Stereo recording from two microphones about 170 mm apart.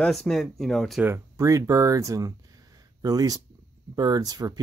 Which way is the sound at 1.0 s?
15° right (ahead or behind).